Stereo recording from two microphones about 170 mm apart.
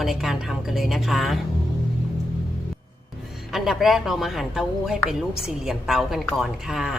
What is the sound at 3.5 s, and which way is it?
Speech, centre (ahead or behind).